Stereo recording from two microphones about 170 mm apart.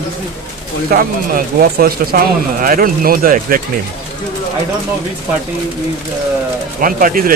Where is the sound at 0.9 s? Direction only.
60° right (ahead or behind).